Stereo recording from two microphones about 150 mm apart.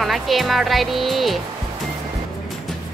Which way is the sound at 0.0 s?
Centre (ahead or behind).